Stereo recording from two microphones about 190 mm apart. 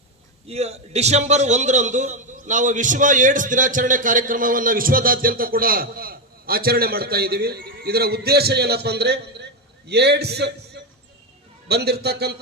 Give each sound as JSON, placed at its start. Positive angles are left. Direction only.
{"t": 0.4, "sound": "a man's voice", "side_deg": -35}